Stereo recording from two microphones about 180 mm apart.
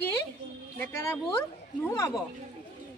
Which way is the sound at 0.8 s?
15° left (ahead or behind).